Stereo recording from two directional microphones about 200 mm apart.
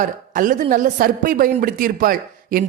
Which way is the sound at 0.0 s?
40° right (ahead or behind).